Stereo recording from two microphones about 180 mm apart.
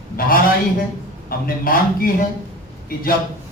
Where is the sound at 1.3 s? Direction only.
55° left (ahead or behind).